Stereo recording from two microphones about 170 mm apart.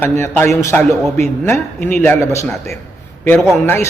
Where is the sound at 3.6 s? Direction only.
15° left (ahead or behind).